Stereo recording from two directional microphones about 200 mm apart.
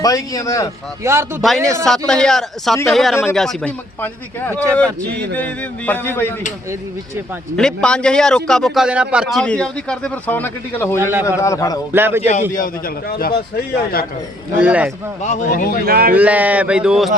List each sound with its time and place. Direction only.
0.0 s a man's voice: 15° left (ahead or behind)
1.0 s speech: 15° right (ahead or behind)
1.4 s a man's voice: centre (ahead or behind)
7.5 s a man's voice: 5° left (ahead or behind)
11.9 s speech: 10° right (ahead or behind)
12.2 s a man's voice: 40° left (ahead or behind)
14.6 s speech: 5° right (ahead or behind)
15.2 s speech: 35° left (ahead or behind)
15.4 s a man's voice: 45° left (ahead or behind)
15.9 s a man's voice: 50° right (ahead or behind)
16.1 s speech: 10° right (ahead or behind)